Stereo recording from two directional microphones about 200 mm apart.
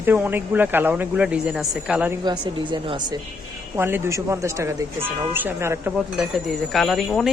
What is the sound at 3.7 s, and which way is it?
Speech, 10° right (ahead or behind).